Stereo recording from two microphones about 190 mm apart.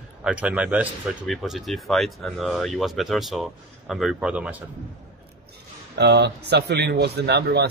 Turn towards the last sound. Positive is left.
turn(degrees=-60)  # may be behind; listen again after turning